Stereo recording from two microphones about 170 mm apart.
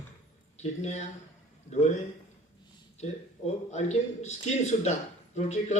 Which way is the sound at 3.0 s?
40° left (ahead or behind).